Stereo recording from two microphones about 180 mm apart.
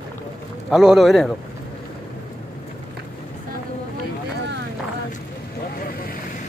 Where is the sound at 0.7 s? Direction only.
Centre (ahead or behind).